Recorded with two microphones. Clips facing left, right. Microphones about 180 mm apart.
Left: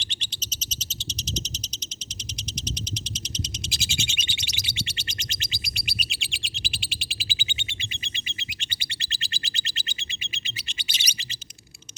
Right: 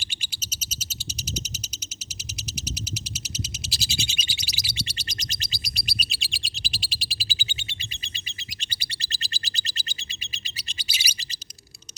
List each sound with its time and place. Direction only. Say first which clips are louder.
0.0 s bird: left 2 dB; 10° right (ahead or behind)
3.7 s bird: even; 35° right (ahead or behind)